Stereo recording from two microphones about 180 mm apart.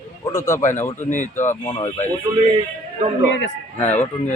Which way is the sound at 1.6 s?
25° left (ahead or behind).